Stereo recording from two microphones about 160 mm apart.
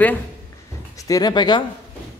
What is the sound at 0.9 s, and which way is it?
Speech, 20° left (ahead or behind).